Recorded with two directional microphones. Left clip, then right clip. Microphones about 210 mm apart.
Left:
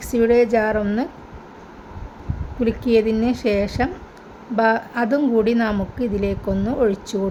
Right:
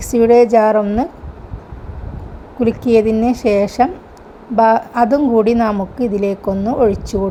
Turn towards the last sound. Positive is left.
turn(degrees=-10)  # may be behind; listen again after turning